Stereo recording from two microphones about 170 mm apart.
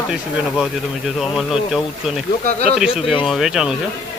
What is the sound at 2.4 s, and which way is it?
Speech, 40° left (ahead or behind).